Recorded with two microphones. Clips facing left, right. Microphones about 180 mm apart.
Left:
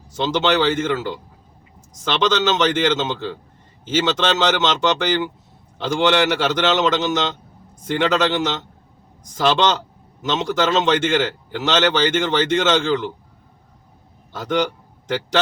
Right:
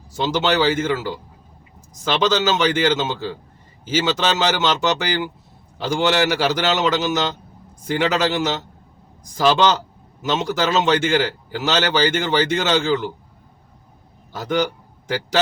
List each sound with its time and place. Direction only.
0.2 s a man's voice: 10° right (ahead or behind)
14.3 s a man's voice: 10° right (ahead or behind)